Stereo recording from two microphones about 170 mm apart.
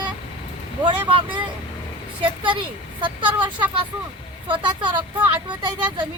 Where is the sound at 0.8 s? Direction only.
30° right (ahead or behind).